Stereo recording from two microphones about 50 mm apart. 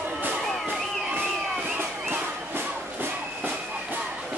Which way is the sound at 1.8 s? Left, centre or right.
Right.